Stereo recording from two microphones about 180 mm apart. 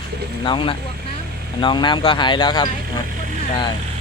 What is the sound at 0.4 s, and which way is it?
Speech, 30° left (ahead or behind).